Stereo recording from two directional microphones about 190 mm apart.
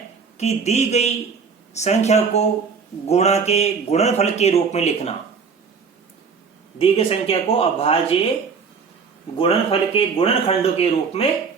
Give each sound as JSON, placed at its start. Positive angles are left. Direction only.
{"t": 0.3, "sound": "speech", "side_deg": 35}
{"t": 6.7, "sound": "speech", "side_deg": 30}
{"t": 9.4, "sound": "speech", "side_deg": 30}